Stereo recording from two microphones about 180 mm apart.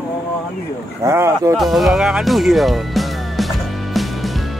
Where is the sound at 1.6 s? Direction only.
Centre (ahead or behind).